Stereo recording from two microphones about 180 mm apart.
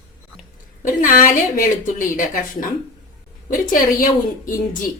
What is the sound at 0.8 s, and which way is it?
A woman's voice, 45° left (ahead or behind).